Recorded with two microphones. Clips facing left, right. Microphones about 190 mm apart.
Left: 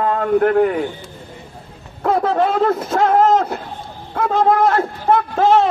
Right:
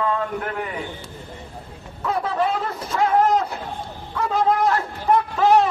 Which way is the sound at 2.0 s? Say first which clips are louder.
Left 6 dB; 55° left (ahead or behind).